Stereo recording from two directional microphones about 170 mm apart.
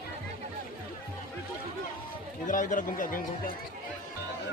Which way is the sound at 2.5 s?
50° left (ahead or behind).